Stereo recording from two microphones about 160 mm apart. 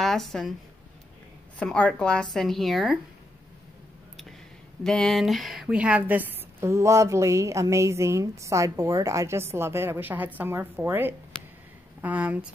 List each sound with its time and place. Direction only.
0.0 s a woman's voice: centre (ahead or behind)
1.6 s a woman's voice: 10° left (ahead or behind)
4.8 s a woman's voice: centre (ahead or behind)